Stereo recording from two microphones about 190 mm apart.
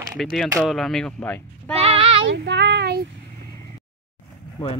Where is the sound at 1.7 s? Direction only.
30° right (ahead or behind).